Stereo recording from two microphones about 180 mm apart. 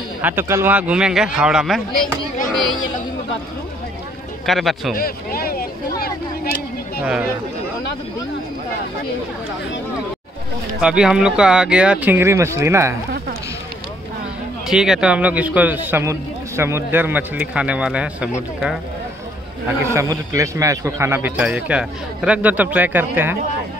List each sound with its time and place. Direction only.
0.2 s speech: 10° right (ahead or behind)
4.5 s speech: centre (ahead or behind)
4.9 s a sound: 55° left (ahead or behind)
10.8 s speech: 5° right (ahead or behind)
14.7 s a man's voice: 5° right (ahead or behind)
19.9 s a man's voice: 15° right (ahead or behind)